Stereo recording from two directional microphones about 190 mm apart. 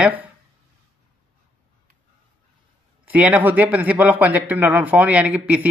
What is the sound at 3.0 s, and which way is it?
Speech, 5° right (ahead or behind).